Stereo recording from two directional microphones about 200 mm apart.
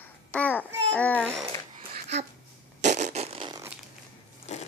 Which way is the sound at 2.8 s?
35° right (ahead or behind).